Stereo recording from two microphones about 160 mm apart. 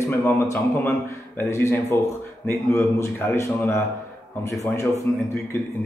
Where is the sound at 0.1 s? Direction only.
15° left (ahead or behind).